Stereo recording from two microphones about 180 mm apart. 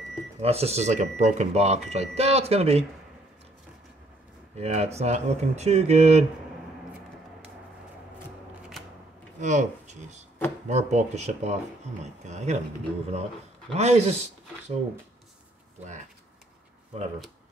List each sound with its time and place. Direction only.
0.4 s speech: 35° right (ahead or behind)
4.6 s speech: 35° right (ahead or behind)
9.4 s speech: 40° right (ahead or behind)